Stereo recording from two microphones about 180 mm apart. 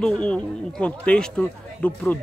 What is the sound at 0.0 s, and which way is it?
A man's voice, 5° left (ahead or behind).